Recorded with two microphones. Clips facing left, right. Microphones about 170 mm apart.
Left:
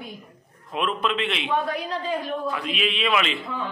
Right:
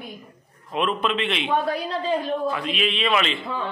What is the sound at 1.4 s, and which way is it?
Speech, 30° right (ahead or behind).